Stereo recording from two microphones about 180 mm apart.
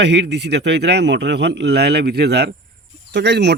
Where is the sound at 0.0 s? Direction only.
75° right (ahead or behind).